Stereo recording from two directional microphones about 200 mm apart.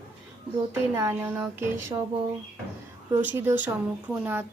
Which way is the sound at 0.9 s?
15° right (ahead or behind).